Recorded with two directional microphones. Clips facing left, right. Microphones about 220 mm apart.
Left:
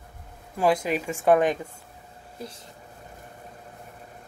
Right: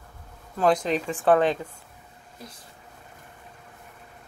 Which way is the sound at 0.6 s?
10° left (ahead or behind).